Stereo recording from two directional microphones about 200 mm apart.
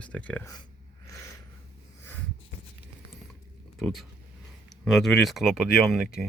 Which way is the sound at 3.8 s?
Centre (ahead or behind).